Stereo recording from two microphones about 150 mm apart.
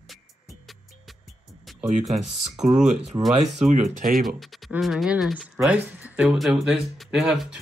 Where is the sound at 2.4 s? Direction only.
50° right (ahead or behind).